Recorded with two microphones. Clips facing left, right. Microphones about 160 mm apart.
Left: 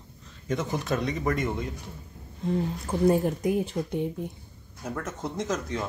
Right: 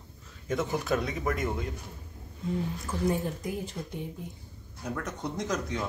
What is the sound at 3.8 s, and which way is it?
Speech, 75° left (ahead or behind).